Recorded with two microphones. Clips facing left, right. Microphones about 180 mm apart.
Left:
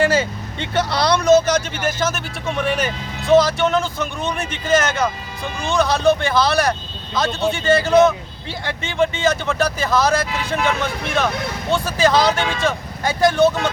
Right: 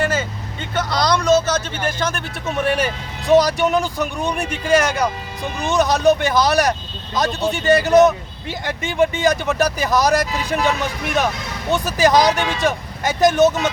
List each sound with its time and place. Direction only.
0.7 s speech: 30° left (ahead or behind); by 2.2 s 5° left (ahead or behind)
2.6 s speech: 10° right (ahead or behind)